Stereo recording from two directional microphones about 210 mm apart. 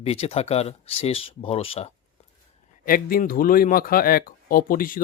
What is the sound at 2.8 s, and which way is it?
Speech, 40° left (ahead or behind).